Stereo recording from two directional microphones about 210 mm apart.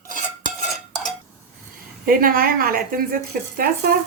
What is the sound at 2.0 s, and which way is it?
Speech, 45° right (ahead or behind).